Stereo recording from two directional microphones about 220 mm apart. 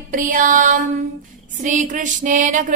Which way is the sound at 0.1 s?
35° right (ahead or behind).